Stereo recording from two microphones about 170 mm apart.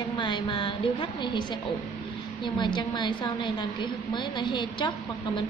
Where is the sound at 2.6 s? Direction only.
25° left (ahead or behind).